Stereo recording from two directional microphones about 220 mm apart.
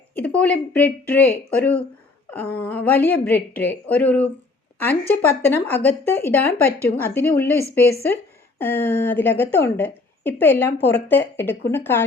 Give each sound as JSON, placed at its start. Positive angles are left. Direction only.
{"t": 0.2, "sound": "a woman's voice", "side_deg": 5}